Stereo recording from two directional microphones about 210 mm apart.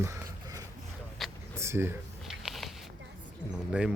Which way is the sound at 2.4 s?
Centre (ahead or behind).